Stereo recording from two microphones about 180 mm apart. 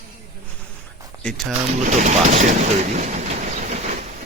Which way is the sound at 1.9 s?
40° right (ahead or behind).